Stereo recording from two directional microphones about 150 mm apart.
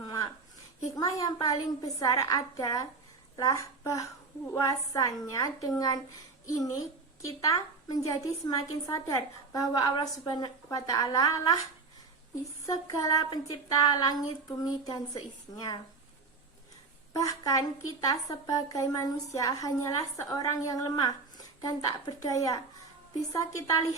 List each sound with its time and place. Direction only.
0.0 s a sound: 25° left (ahead or behind)
0.9 s a woman's voice: 25° left (ahead or behind)
12.6 s a woman's voice: 20° left (ahead or behind)
17.2 s a woman's voice: 20° left (ahead or behind)